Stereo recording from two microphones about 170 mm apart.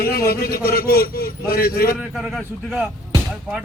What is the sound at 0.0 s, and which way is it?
A man's voice, 65° left (ahead or behind).